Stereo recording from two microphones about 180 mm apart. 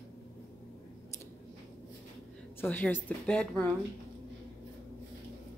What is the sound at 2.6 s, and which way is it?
A woman's voice, 10° left (ahead or behind).